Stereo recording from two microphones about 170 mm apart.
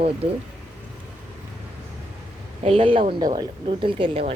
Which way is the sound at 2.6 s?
35° right (ahead or behind).